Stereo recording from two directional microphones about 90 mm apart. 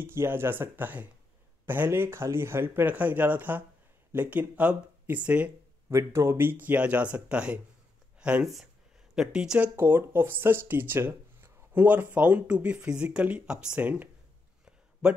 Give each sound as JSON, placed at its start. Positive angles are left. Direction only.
{"t": 0.0, "sound": "speech", "side_deg": -25}
{"t": 5.9, "sound": "speech", "side_deg": -30}
{"t": 9.8, "sound": "speech", "side_deg": -25}
{"t": 14.6, "sound": "a sound", "side_deg": -10}